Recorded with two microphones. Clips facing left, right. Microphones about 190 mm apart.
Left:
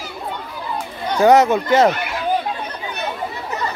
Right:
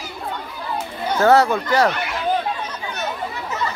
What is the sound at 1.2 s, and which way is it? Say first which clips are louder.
Speech: left 3 dB; 20° left (ahead or behind).